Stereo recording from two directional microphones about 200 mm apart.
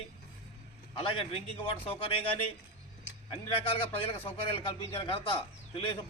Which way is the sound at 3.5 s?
30° left (ahead or behind).